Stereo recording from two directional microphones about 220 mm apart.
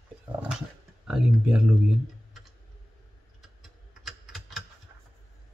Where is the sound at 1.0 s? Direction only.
Centre (ahead or behind).